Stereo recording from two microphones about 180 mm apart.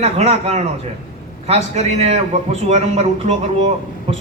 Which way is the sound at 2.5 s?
35° right (ahead or behind).